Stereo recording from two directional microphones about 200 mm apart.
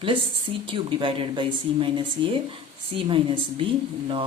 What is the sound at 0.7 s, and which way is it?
A woman's voice, 25° right (ahead or behind).